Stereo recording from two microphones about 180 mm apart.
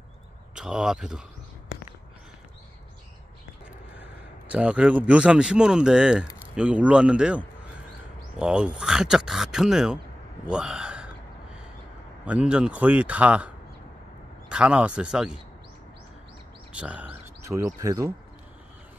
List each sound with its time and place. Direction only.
0.6 s speech: 5° right (ahead or behind)
3.9 s speech: 10° right (ahead or behind)
10.5 s a sound: 5° right (ahead or behind)
12.3 s speech: 5° right (ahead or behind)
14.5 s speech: 5° right (ahead or behind)
16.7 s a sound: 10° right (ahead or behind)
17.6 s speech: 20° right (ahead or behind)